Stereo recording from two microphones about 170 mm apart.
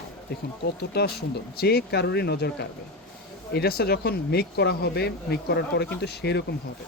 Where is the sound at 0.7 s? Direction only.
70° left (ahead or behind).